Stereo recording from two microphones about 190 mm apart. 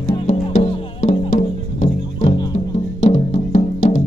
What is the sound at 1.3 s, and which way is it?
Music, 40° left (ahead or behind).